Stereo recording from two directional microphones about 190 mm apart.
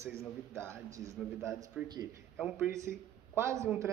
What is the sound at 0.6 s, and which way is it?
A man's voice, 15° right (ahead or behind).